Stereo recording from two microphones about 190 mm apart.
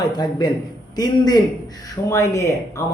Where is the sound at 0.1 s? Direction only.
20° left (ahead or behind).